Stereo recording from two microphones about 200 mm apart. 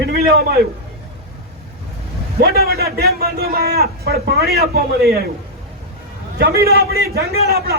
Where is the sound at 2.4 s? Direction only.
50° right (ahead or behind).